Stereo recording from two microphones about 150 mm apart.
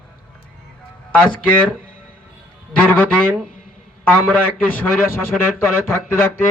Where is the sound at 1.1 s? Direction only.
10° left (ahead or behind).